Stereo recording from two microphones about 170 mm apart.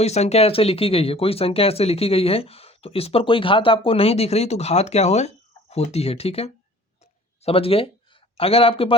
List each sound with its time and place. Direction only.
0.0 s a man's voice: 40° left (ahead or behind)